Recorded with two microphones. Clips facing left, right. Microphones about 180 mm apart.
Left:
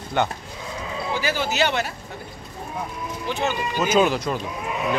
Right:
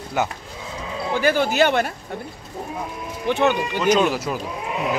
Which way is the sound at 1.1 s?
55° right (ahead or behind).